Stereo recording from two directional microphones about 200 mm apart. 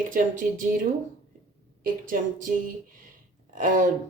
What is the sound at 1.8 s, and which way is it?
Speech, 40° right (ahead or behind).